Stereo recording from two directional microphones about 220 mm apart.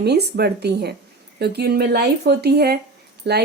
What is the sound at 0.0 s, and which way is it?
A woman's voice, 45° right (ahead or behind).